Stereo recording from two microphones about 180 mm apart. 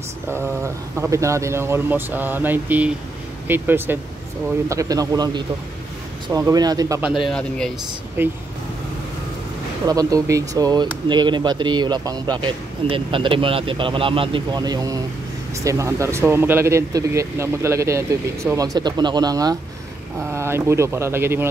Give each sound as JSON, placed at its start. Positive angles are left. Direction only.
{"t": 0.9, "sound": "speech", "side_deg": -15}
{"t": 7.0, "sound": "speech", "side_deg": -5}
{"t": 8.2, "sound": "speech", "side_deg": -10}
{"t": 9.8, "sound": "speech", "side_deg": -20}